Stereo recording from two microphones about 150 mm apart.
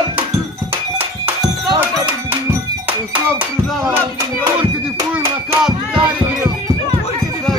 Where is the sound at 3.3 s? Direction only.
15° right (ahead or behind).